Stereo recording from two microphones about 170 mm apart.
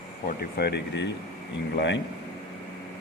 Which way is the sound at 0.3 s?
65° left (ahead or behind).